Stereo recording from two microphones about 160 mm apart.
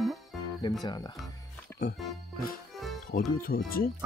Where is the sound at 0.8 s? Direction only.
25° left (ahead or behind).